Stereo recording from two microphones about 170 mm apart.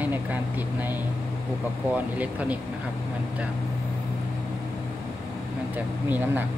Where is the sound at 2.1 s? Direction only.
10° right (ahead or behind).